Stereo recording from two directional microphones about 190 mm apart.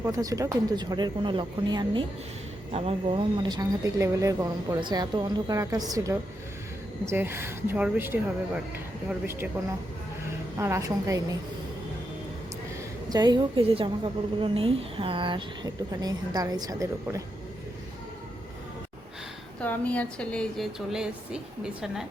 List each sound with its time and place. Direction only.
0.0 s a woman's voice: 20° right (ahead or behind)
10.6 s speech: 15° right (ahead or behind)
13.1 s a woman's voice: 20° right (ahead or behind)
19.5 s speech: 5° left (ahead or behind)